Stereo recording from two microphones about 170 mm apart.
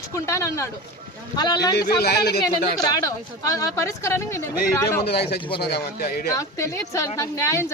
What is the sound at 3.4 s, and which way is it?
Speech, 20° left (ahead or behind).